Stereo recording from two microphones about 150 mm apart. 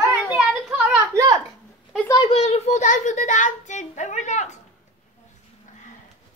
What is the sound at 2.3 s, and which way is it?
A child's voice, 45° left (ahead or behind).